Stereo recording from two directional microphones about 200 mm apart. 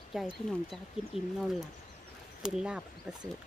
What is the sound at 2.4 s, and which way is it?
Speech, 5° right (ahead or behind).